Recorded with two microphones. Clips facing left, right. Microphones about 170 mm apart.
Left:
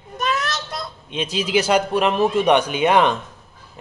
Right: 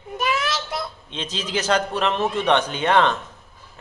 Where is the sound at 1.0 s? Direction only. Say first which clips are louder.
Left 6 dB; 10° left (ahead or behind).